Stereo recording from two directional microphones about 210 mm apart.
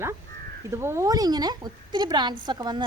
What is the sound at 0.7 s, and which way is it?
A woman's voice, 10° right (ahead or behind).